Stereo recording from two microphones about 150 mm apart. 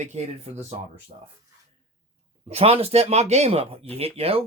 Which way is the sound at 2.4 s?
45° right (ahead or behind).